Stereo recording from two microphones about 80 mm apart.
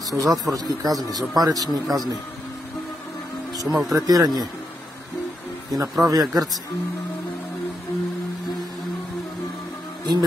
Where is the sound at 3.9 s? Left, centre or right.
Right.